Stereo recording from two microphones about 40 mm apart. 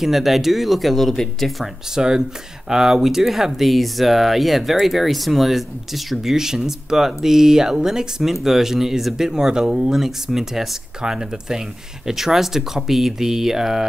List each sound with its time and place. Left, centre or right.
0.0 s speech: centre
2.0 s speech: centre
6.3 s speech: centre